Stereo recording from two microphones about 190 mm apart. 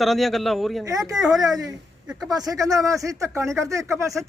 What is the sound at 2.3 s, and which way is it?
Speech, 20° right (ahead or behind).